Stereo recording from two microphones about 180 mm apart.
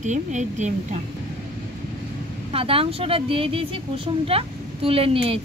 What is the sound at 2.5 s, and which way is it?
A woman's voice, 30° right (ahead or behind).